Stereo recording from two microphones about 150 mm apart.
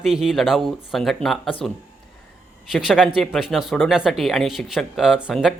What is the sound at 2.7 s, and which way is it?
A man's voice, 5° right (ahead or behind).